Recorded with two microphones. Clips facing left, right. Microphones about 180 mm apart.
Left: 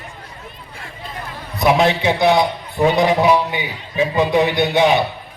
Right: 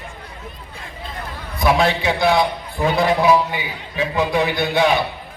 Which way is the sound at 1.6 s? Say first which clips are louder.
Left 2 dB; 20° left (ahead or behind).